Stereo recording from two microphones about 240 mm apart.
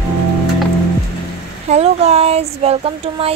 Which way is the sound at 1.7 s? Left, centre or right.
Right.